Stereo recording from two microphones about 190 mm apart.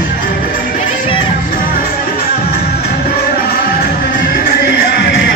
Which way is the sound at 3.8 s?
50° left (ahead or behind).